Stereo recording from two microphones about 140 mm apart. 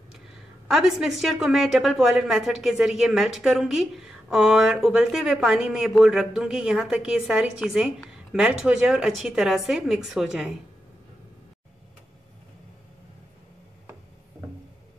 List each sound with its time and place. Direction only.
0.7 s a woman's voice: 5° right (ahead or behind)